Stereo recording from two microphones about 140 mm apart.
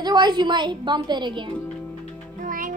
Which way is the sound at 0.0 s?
30° right (ahead or behind).